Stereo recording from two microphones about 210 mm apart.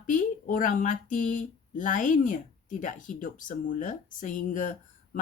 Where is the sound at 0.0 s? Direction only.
40° left (ahead or behind).